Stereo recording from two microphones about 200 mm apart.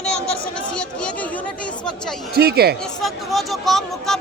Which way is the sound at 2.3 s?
50° right (ahead or behind).